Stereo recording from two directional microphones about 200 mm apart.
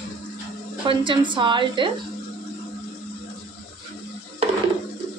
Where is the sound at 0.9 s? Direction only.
25° right (ahead or behind).